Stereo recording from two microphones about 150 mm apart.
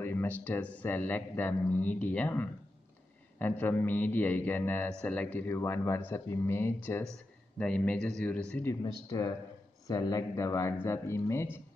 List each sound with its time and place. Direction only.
0.0 s speech: 15° left (ahead or behind)
8.8 s speech: 25° left (ahead or behind)